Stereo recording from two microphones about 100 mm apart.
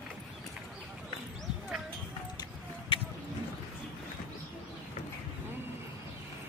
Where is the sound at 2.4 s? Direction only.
60° left (ahead or behind).